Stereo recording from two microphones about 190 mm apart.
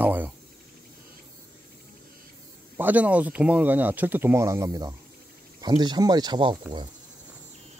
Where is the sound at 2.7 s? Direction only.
10° right (ahead or behind).